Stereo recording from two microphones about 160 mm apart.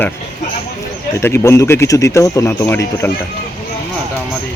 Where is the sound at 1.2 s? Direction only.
15° left (ahead or behind).